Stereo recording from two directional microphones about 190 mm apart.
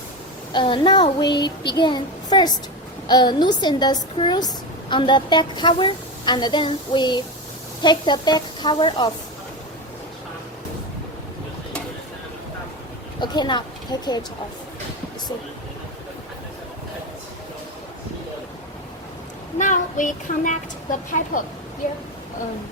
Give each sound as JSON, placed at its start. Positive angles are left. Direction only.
{"t": 0.5, "sound": "a woman's voice", "side_deg": 25}
{"t": 13.1, "sound": "a woman's voice", "side_deg": 25}
{"t": 19.5, "sound": "child singing", "side_deg": 40}